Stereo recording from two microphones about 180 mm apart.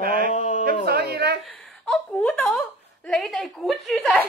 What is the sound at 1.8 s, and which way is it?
Speech, 5° left (ahead or behind).